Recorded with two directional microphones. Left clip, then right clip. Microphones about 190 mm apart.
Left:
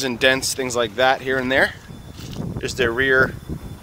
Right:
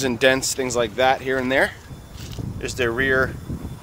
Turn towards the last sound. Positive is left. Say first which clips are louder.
# left 3 dB
turn(degrees=0)  # may be behind; listen again after turning